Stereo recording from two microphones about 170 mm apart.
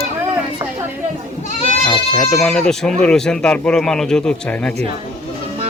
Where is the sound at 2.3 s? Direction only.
5° left (ahead or behind).